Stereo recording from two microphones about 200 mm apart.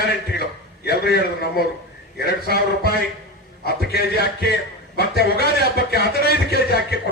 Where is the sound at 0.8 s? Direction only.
55° left (ahead or behind).